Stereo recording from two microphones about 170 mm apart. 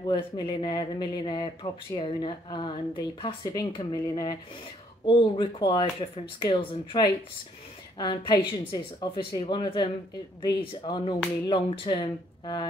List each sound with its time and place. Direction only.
0.0 s speech: 25° left (ahead or behind)